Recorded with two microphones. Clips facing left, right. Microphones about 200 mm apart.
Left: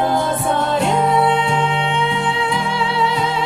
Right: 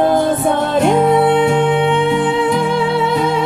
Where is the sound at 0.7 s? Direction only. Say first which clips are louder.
Right 6 dB; 55° right (ahead or behind).